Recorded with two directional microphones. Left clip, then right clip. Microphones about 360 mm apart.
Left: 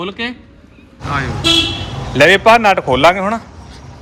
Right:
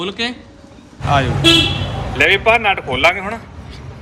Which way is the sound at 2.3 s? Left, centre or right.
Left.